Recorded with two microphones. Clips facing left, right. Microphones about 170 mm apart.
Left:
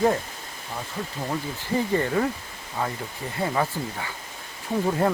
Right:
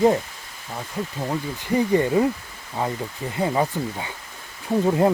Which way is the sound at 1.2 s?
15° right (ahead or behind).